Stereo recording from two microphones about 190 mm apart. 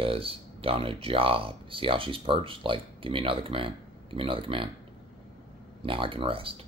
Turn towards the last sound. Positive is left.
turn(degrees=-30)  # may be behind; listen again after turning